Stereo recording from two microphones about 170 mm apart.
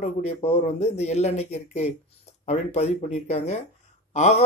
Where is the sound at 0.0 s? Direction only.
40° left (ahead or behind).